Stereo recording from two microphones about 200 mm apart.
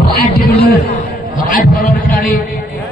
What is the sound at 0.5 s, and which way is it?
Speech, 50° left (ahead or behind).